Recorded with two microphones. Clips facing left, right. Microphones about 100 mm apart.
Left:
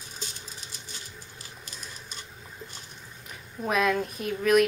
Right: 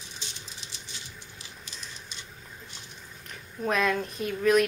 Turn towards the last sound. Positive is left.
turn(degrees=0)  # may be behind; listen again after turning